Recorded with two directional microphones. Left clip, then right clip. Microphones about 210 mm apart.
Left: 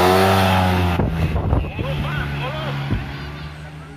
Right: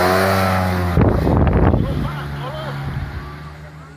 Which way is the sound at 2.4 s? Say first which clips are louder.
Left 1 dB; 20° left (ahead or behind).